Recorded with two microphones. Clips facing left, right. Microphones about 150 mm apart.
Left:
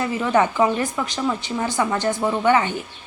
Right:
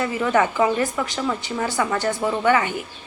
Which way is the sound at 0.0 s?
25° left (ahead or behind).